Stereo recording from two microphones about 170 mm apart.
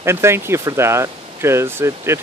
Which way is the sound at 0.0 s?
15° right (ahead or behind).